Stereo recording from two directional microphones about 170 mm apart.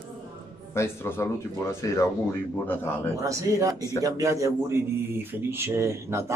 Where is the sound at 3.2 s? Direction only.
20° right (ahead or behind).